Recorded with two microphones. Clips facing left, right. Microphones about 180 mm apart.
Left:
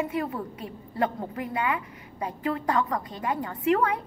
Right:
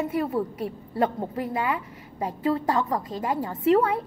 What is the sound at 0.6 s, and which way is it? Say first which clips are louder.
A woman's voice: right 3 dB; 25° right (ahead or behind).